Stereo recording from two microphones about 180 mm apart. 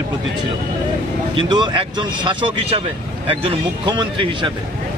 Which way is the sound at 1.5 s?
25° right (ahead or behind).